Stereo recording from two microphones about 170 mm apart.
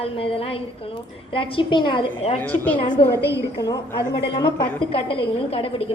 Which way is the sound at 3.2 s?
90° left.